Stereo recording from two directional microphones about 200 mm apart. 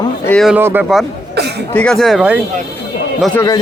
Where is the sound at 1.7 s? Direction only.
5° left (ahead or behind).